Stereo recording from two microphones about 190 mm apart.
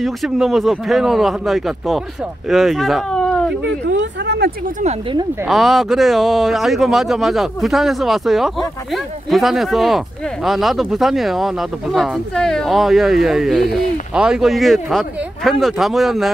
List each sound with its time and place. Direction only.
0.0 s speech: centre (ahead or behind)
3.6 s speech: 70° right (ahead or behind)
5.5 s speech: centre (ahead or behind)